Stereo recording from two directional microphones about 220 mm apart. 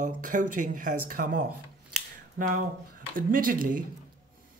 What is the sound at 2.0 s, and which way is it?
Scissors, 35° right (ahead or behind).